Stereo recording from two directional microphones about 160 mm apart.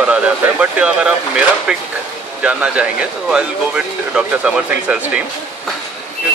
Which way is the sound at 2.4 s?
10° right (ahead or behind).